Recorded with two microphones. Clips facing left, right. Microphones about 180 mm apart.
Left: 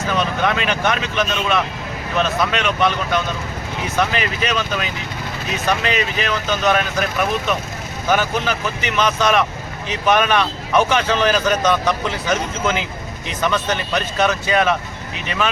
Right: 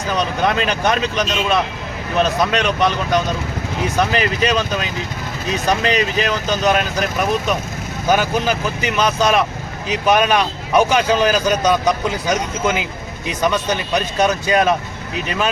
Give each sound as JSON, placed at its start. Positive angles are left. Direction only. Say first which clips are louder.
{"t": 0.1, "sound": "speech", "louder": "right 2 dB", "side_deg": -35}
{"t": 8.1, "sound": "speech", "louder": "right 2 dB", "side_deg": -10}
{"t": 8.8, "sound": "speech", "louder": "even", "side_deg": -35}
{"t": 9.9, "sound": "speech", "louder": "right 2 dB", "side_deg": -10}
{"t": 14.4, "sound": "speech", "louder": "right 3 dB", "side_deg": -40}